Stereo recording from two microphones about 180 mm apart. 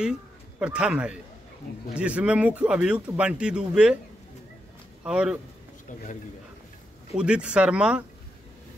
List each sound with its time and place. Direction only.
0.6 s speech: 5° right (ahead or behind)
5.0 s speech: 5° right (ahead or behind)
7.2 s speech: 5° right (ahead or behind)